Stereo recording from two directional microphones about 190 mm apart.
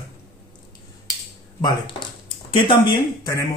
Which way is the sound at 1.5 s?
20° left (ahead or behind).